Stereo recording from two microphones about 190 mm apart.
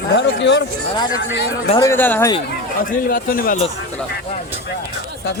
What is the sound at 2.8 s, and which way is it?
Speech, 45° left (ahead or behind).